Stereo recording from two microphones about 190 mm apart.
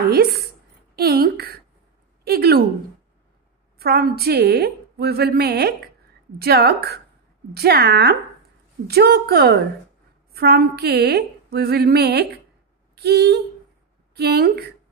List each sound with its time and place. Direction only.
0.1 s a woman's voice: 55° right (ahead or behind)
0.9 s a sound: 55° right (ahead or behind)
2.2 s a woman's voice: 55° right (ahead or behind)
3.7 s a woman's voice: 55° right (ahead or behind)